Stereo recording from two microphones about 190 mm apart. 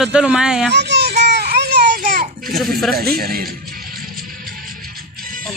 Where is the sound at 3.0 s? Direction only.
50° right (ahead or behind).